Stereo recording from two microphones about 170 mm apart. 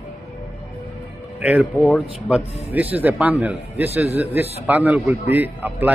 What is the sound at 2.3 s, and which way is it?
A man's voice, 10° right (ahead or behind).